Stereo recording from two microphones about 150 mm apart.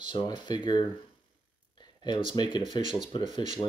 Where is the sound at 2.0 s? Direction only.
30° left (ahead or behind).